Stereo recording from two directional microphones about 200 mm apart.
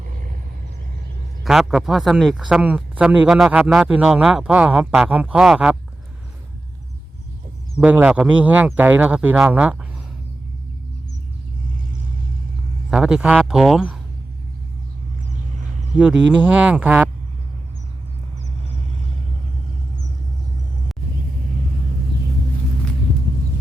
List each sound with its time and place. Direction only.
0.0 s vehicle: 45° right (ahead or behind)
1.5 s speech: centre (ahead or behind)
7.8 s speech: 5° right (ahead or behind)
12.9 s speech: 5° right (ahead or behind)
16.0 s speech: 5° right (ahead or behind)